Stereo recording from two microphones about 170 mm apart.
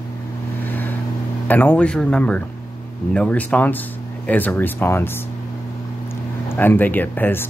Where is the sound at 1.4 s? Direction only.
10° left (ahead or behind).